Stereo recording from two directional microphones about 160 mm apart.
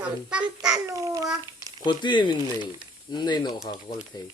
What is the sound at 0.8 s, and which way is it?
Babbling, 20° right (ahead or behind).